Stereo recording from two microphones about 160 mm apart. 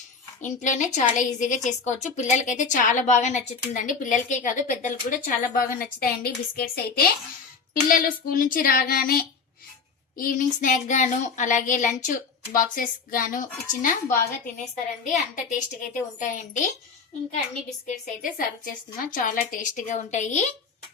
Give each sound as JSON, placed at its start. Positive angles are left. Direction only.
{"t": 0.4, "sound": "a woman's voice", "side_deg": 50}
{"t": 7.7, "sound": "a woman's voice", "side_deg": 60}
{"t": 15.4, "sound": "a woman's voice", "side_deg": 50}
{"t": 17.8, "sound": "a woman's voice", "side_deg": 55}